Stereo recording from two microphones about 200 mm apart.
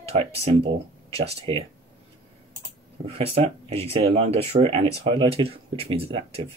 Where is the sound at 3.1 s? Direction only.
30° right (ahead or behind).